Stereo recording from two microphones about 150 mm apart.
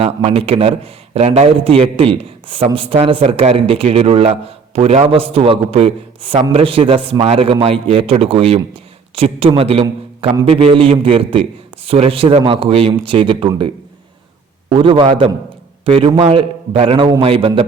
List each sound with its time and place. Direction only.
0.0 s a man's voice: 40° right (ahead or behind)
14.7 s a man's voice: 35° right (ahead or behind)